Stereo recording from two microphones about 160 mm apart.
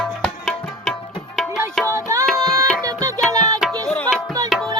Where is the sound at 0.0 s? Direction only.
5° left (ahead or behind).